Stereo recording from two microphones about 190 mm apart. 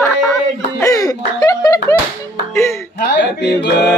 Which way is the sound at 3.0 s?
60° left (ahead or behind).